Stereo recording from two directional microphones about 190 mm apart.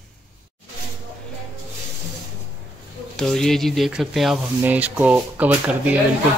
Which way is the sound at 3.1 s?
5° left (ahead or behind).